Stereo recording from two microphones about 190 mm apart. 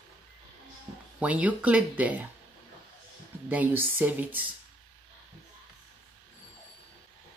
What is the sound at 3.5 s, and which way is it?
Speech, 10° right (ahead or behind).